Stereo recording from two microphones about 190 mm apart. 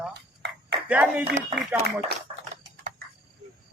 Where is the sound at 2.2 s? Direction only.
40° right (ahead or behind).